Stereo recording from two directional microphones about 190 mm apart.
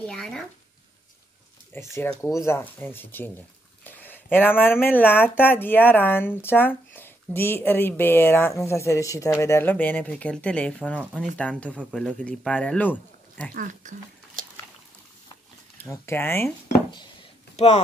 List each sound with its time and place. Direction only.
0.0 s speech: 5° left (ahead or behind)
1.7 s speech: 15° left (ahead or behind)
13.5 s speech: 45° right (ahead or behind)
15.8 s speech: 10° left (ahead or behind)
17.6 s speech: 35° left (ahead or behind)